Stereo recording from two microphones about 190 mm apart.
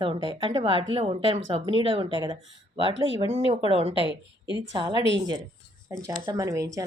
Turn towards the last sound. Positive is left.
turn(degrees=-15)  # may be behind; listen again after turning